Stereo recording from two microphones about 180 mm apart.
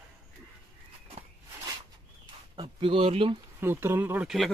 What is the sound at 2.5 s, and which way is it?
Speech, 25° right (ahead or behind).